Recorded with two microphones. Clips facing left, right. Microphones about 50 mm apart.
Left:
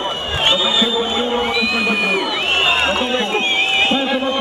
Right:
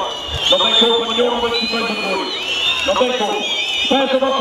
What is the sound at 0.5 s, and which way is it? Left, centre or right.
A man's voice, centre.